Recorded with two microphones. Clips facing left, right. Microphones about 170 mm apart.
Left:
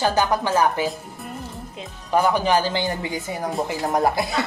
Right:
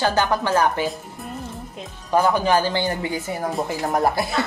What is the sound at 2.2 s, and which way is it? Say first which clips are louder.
A woman's voice: even; 15° left (ahead or behind).